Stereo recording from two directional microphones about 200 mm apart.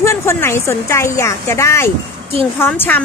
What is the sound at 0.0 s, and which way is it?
A woman's voice, 15° left (ahead or behind).